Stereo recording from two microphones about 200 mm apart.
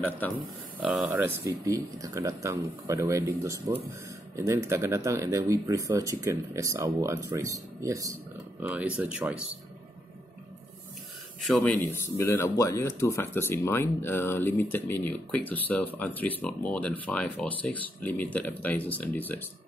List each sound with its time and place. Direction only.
0.7 s speech: 5° right (ahead or behind)
11.4 s speech: 5° left (ahead or behind)